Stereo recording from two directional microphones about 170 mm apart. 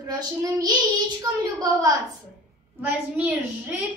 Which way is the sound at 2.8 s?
10° right (ahead or behind).